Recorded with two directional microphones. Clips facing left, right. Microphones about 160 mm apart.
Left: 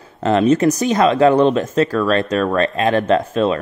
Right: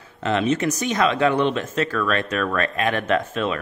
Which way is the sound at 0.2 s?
40° left (ahead or behind).